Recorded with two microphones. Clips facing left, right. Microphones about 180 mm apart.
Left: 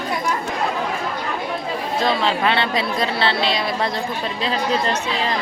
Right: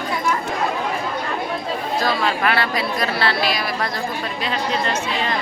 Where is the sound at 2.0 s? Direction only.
25° left (ahead or behind).